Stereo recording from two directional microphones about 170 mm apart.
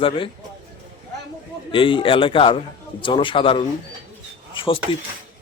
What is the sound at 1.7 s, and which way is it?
A man's voice, 30° left (ahead or behind).